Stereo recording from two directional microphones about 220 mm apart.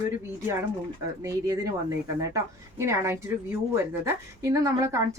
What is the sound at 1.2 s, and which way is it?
Speech, 15° right (ahead or behind).